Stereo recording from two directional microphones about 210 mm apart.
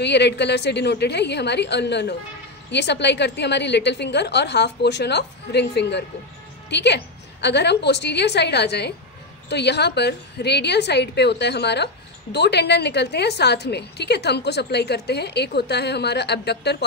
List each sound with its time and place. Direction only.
0.0 s a woman's voice: 55° left (ahead or behind)